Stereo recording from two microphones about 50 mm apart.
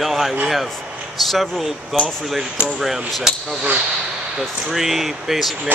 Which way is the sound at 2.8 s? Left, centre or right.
Centre.